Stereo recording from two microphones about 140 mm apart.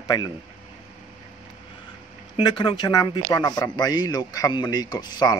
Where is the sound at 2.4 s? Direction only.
35° left (ahead or behind).